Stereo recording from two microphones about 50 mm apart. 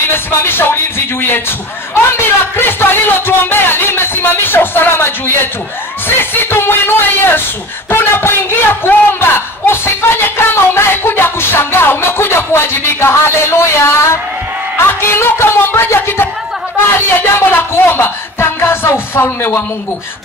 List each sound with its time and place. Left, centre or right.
0.1 s a woman's voice: left
6.0 s a sound: left
7.9 s a man's voice: left